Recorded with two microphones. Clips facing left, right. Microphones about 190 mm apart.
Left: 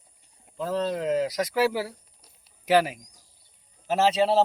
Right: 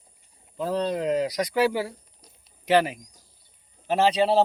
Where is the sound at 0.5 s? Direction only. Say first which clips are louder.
Right 1 dB; centre (ahead or behind).